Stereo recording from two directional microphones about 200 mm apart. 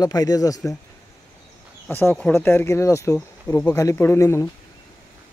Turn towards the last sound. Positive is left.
turn(degrees=15)  # may be behind; listen again after turning